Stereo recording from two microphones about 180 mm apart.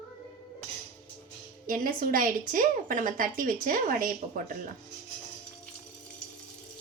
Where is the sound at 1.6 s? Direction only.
50° right (ahead or behind).